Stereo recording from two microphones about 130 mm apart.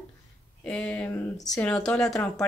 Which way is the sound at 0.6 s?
10° left (ahead or behind).